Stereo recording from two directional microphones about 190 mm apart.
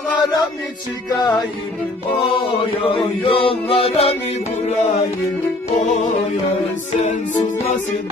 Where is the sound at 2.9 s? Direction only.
30° left (ahead or behind).